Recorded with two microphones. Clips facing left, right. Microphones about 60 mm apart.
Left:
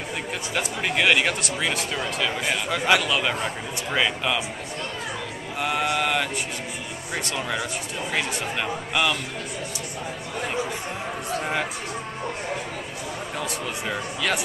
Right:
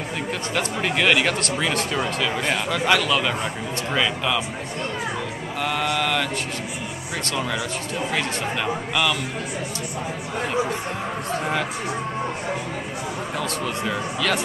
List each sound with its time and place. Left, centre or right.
0.6 s speech: centre
5.6 s speech: centre
7.2 s speech: centre
13.4 s speech: centre